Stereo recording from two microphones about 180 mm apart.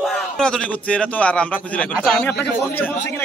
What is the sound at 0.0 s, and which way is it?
A man's voice, 5° left (ahead or behind).